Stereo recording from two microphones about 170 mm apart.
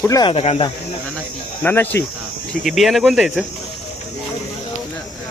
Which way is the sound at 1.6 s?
10° left (ahead or behind).